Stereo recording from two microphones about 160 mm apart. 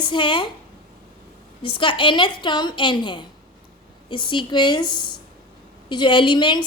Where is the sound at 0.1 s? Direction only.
30° left (ahead or behind).